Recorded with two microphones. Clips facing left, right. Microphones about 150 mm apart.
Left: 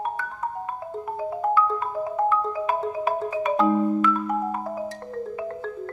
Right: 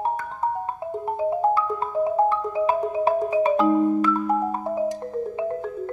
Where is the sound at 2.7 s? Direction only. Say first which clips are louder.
Right 4 dB; 20° right (ahead or behind).